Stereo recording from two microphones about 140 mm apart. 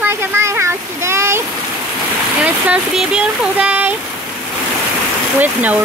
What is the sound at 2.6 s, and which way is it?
Speech, 5° right (ahead or behind).